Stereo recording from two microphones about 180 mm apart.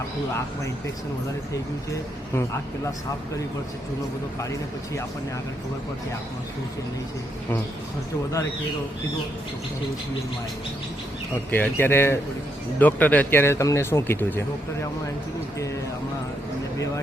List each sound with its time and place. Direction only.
11.5 s speech: 10° left (ahead or behind)
16.7 s a man's voice: 15° left (ahead or behind)